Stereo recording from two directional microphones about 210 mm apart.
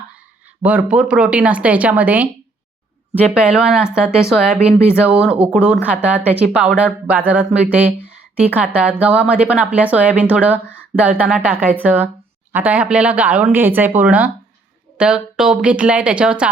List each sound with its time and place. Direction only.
0.6 s speech: 5° right (ahead or behind)